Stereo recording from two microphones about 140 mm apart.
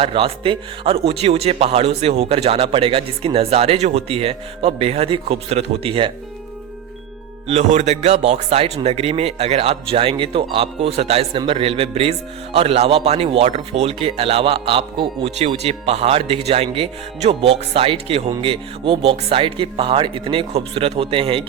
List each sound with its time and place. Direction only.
0.0 s speech: 40° right (ahead or behind)
7.4 s speech: 50° right (ahead or behind)